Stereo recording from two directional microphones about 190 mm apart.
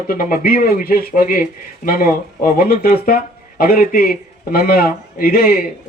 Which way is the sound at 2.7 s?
50° left (ahead or behind).